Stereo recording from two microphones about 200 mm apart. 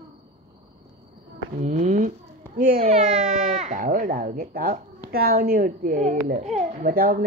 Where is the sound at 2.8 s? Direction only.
35° right (ahead or behind).